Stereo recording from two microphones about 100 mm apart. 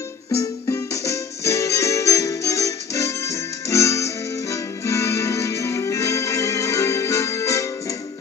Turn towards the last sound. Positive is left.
turn(degrees=30)  # may be behind; listen again after turning